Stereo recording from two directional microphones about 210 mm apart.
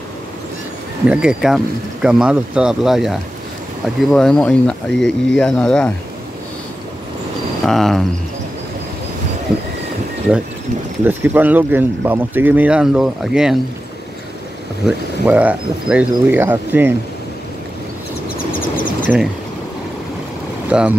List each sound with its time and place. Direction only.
1.0 s speech: 5° right (ahead or behind)
7.6 s speech: centre (ahead or behind)
11.1 s speech: 10° right (ahead or behind)
14.9 s speech: 5° right (ahead or behind)
18.3 s a sound: 40° left (ahead or behind)
20.7 s speech: 5° right (ahead or behind)